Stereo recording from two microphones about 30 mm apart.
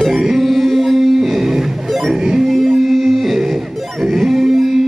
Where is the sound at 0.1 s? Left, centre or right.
Centre.